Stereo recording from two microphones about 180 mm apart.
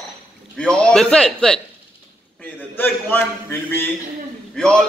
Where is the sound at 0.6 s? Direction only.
5° left (ahead or behind).